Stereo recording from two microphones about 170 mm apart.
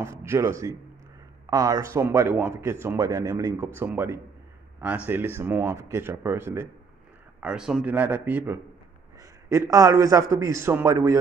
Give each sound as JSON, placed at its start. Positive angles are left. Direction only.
{"t": 0.0, "sound": "speech", "side_deg": -15}